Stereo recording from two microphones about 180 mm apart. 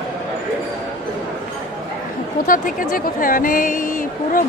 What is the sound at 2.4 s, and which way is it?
Speech, 50° left (ahead or behind).